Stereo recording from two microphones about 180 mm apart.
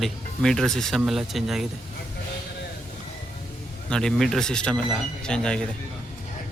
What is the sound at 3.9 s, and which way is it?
Speech, 5° left (ahead or behind).